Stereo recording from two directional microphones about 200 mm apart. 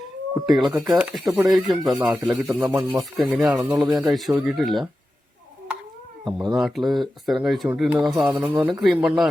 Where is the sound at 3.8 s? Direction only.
20° right (ahead or behind).